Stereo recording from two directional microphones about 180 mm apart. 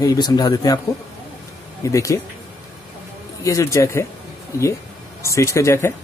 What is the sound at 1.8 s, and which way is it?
Speech, 15° left (ahead or behind).